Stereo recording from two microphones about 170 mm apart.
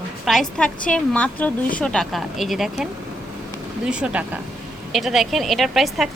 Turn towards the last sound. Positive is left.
turn(degrees=0)  # may be behind; listen again after turning